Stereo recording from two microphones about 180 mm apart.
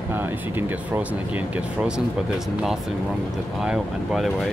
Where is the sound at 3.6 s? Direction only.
Centre (ahead or behind).